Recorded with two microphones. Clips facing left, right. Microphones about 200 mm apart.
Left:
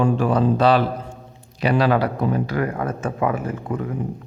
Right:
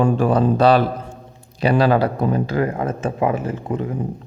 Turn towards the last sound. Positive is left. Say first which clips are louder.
# right 2 dB
turn(degrees=-25)  # may be behind; listen again after turning